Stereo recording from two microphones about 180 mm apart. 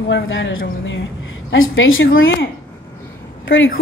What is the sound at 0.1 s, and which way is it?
A woman's voice, 90° left.